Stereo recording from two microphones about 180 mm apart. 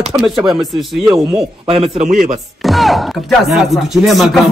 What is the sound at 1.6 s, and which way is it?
Speech, 35° right (ahead or behind).